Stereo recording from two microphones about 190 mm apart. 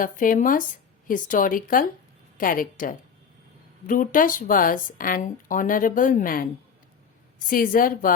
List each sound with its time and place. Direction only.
0.0 s speech: 45° left (ahead or behind)